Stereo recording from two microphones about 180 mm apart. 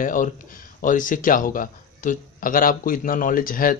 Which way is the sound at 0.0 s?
50° left (ahead or behind).